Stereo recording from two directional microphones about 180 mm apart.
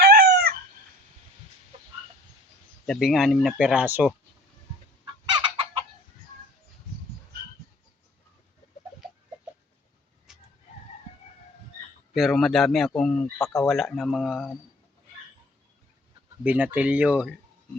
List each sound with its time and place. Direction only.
0.0 s chicken: 60° right (ahead or behind)
1.7 s chicken: 30° right (ahead or behind)
2.8 s speech: centre (ahead or behind)
5.4 s fowl: 30° right (ahead or behind)
10.3 s chicken: 5° right (ahead or behind)
12.1 s speech: centre (ahead or behind)
16.4 s speech: 10° right (ahead or behind)